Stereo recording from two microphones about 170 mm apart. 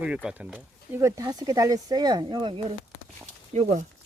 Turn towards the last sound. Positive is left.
turn(degrees=-40)  # may be behind; listen again after turning